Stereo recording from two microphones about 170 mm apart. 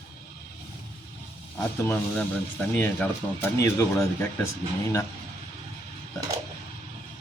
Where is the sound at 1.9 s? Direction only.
10° left (ahead or behind).